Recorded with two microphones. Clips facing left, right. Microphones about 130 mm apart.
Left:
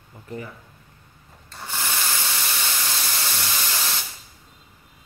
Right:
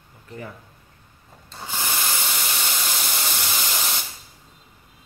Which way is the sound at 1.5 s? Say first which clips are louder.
Right 1 dB; 15° right (ahead or behind).